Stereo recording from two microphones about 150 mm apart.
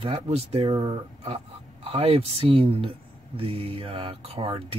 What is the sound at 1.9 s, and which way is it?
Speech, 40° right (ahead or behind).